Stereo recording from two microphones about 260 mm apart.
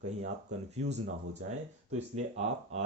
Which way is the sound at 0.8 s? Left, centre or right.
Right.